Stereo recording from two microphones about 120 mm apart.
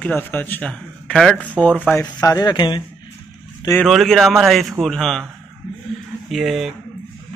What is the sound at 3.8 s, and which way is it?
A man's voice, centre (ahead or behind).